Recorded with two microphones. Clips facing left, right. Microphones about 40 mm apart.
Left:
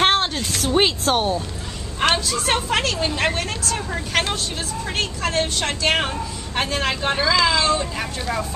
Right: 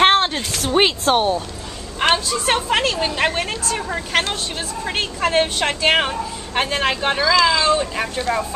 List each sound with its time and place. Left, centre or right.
0.0 s a woman's voice: centre